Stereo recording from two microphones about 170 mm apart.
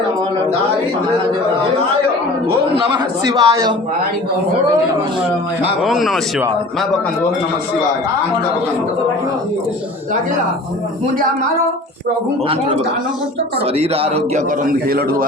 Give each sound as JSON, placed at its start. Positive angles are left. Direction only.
{"t": 2.7, "sound": "speech", "side_deg": -25}
{"t": 5.8, "sound": "speech", "side_deg": 0}
{"t": 13.7, "sound": "speech", "side_deg": -35}
{"t": 14.6, "sound": "a man's voice", "side_deg": -60}